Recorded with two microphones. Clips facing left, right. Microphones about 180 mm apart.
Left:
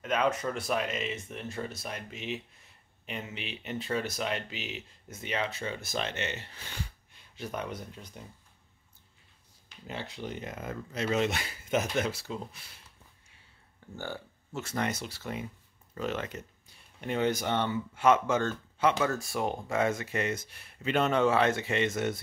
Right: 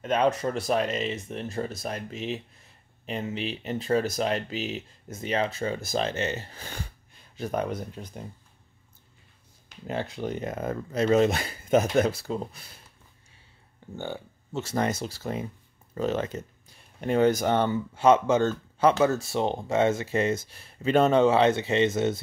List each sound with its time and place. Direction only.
0.0 s speech: 35° right (ahead or behind)
9.8 s speech: 45° right (ahead or behind)
13.9 s speech: 20° right (ahead or behind)
14.7 s speech: 40° right (ahead or behind); by 18.5 s 20° right (ahead or behind)
18.8 s speech: 35° right (ahead or behind)